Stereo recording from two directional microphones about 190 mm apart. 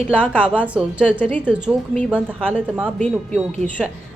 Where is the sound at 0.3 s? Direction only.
10° right (ahead or behind).